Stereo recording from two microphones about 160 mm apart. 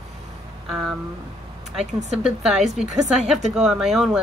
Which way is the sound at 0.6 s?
5° right (ahead or behind).